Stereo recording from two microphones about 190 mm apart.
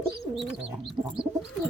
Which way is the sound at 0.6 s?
5° right (ahead or behind).